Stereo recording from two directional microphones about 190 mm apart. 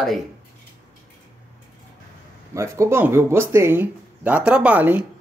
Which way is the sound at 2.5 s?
15° right (ahead or behind).